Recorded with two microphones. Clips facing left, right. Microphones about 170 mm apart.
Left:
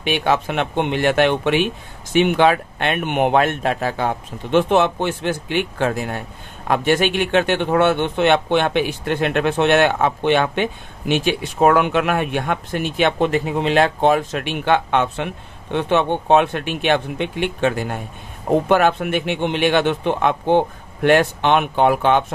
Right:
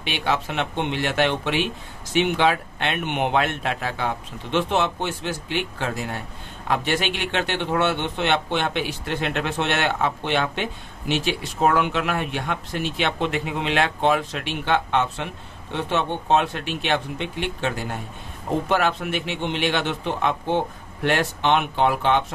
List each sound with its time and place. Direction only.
0.0 s a man's voice: 50° left (ahead or behind)